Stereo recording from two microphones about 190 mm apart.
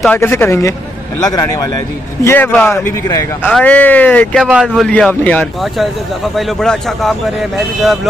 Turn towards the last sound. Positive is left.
turn(degrees=0)  # may be behind; listen again after turning